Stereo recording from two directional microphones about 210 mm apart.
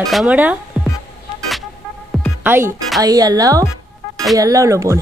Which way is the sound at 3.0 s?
15° right (ahead or behind).